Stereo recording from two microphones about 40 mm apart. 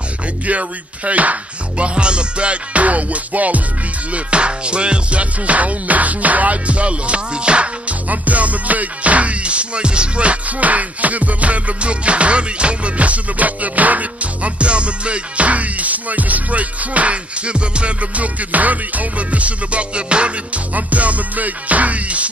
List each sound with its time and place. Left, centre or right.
0.5 s music: right
2.0 s music: right
4.1 s music: right